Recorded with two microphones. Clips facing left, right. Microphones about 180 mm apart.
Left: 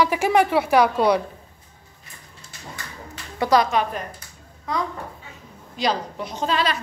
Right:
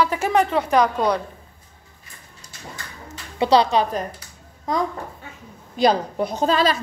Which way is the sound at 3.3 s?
30° right (ahead or behind).